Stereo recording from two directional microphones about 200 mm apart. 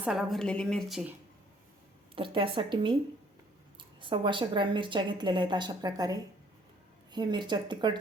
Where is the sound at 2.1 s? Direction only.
25° right (ahead or behind).